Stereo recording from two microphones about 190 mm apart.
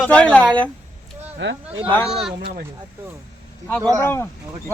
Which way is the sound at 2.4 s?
55° right (ahead or behind).